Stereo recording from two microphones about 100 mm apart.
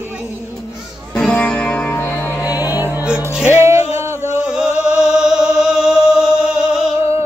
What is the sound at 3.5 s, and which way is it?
Music, 30° right (ahead or behind).